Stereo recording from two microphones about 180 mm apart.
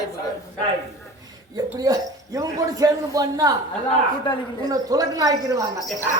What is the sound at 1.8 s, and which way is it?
A man's voice, 20° right (ahead or behind).